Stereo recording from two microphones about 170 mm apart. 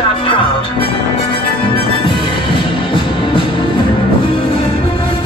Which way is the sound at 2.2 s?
30° left (ahead or behind).